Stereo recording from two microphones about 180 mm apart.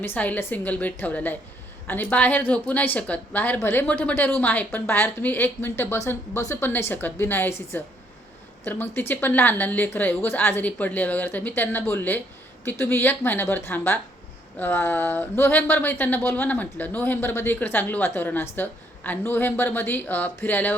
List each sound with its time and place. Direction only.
0.0 s speech: 10° left (ahead or behind)